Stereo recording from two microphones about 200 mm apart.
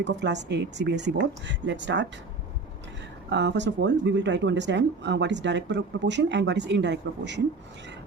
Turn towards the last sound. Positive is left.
turn(degrees=-60)  # may be behind; listen again after turning